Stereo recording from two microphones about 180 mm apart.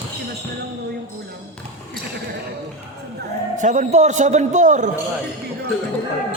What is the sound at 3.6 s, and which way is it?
A man's voice, 40° right (ahead or behind).